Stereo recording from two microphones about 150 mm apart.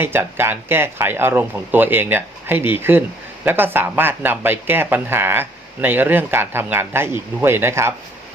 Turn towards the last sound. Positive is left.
turn(degrees=-15)  # may be behind; listen again after turning